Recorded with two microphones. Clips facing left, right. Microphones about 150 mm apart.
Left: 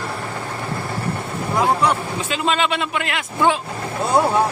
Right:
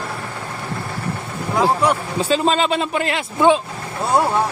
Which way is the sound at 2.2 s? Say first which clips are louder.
Right 5 dB; 35° right (ahead or behind).